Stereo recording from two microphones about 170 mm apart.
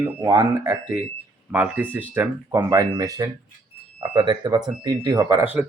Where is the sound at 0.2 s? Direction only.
20° right (ahead or behind).